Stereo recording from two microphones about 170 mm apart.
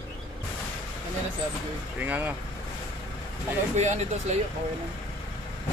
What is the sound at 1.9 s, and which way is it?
Speech, 10° right (ahead or behind).